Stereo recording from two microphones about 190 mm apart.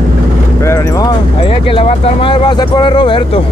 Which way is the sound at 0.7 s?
15° left (ahead or behind).